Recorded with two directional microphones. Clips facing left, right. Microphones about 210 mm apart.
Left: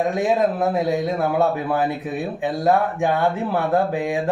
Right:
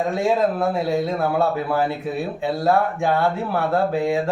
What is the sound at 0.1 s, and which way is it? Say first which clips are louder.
Speech: even; 20° left (ahead or behind).